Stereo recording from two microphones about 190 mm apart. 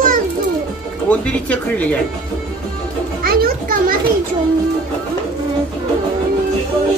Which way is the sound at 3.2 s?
55° right (ahead or behind).